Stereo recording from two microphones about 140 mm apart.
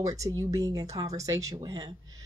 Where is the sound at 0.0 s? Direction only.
25° right (ahead or behind).